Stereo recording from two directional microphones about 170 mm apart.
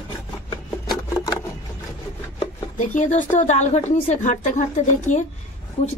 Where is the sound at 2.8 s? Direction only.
45° left (ahead or behind).